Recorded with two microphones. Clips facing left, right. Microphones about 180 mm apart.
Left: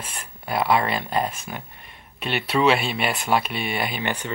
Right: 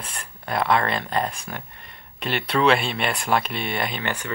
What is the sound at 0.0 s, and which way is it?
Speech, 5° left (ahead or behind).